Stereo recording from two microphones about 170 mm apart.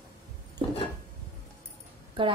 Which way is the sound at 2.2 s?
30° right (ahead or behind).